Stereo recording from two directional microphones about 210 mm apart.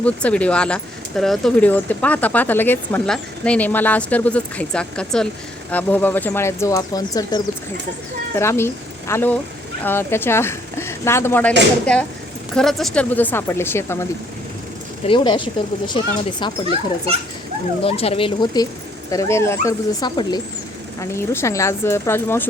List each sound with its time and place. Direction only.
0.0 s a woman's voice: 5° left (ahead or behind)
12.5 s speech: centre (ahead or behind)
15.0 s speech: 25° left (ahead or behind)
17.8 s speech: 30° left (ahead or behind); by 22.4 s 10° left (ahead or behind)